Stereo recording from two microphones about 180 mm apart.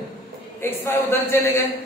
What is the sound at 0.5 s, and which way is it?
A man's voice, 10° left (ahead or behind).